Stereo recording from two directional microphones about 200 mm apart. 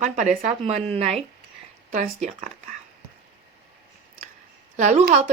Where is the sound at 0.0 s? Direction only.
35° right (ahead or behind).